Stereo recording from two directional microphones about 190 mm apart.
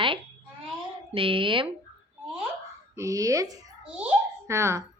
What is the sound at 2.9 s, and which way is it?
Speech, 15° right (ahead or behind).